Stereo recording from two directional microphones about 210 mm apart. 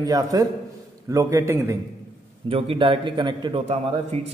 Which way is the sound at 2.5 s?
25° right (ahead or behind).